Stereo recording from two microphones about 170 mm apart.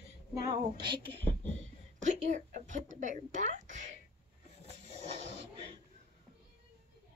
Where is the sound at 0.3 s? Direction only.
25° right (ahead or behind).